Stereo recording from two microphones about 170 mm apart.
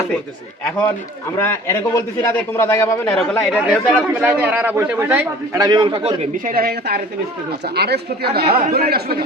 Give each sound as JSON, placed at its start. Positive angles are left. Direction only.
{"t": 1.4, "sound": "a man's voice", "side_deg": 15}
{"t": 3.4, "sound": "a man's voice", "side_deg": -5}
{"t": 5.6, "sound": "a man's voice", "side_deg": -30}
{"t": 6.5, "sound": "speech", "side_deg": -60}